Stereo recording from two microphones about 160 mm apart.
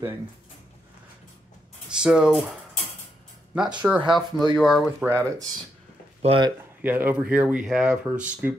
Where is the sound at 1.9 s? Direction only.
5° right (ahead or behind).